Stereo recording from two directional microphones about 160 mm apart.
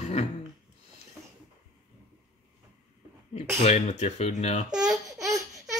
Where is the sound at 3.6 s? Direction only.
45° left (ahead or behind).